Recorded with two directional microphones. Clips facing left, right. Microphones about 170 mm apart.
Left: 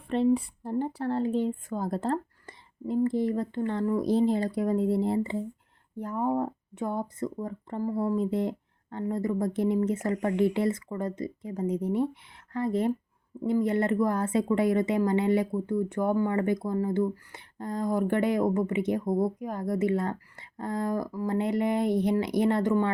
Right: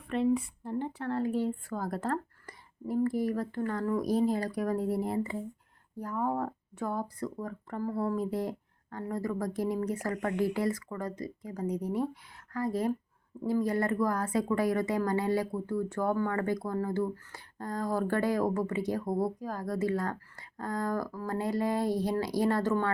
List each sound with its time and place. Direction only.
0.1 s speech: 30° left (ahead or behind)